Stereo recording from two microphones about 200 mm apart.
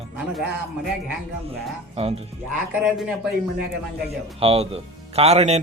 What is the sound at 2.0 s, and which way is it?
Speech, 30° right (ahead or behind).